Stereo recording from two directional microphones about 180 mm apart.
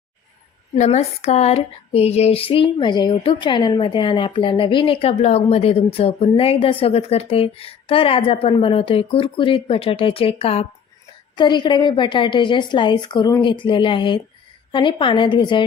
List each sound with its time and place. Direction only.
0.8 s female singing: 35° left (ahead or behind)
11.3 s a woman's voice: 25° left (ahead or behind)